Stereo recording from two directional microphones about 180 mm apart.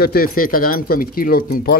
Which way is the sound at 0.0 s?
55° left (ahead or behind).